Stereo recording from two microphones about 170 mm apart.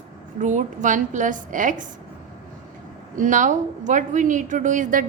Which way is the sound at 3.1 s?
50° right (ahead or behind).